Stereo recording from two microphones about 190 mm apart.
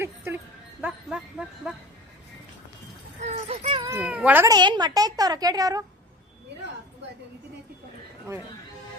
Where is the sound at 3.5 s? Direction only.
30° right (ahead or behind).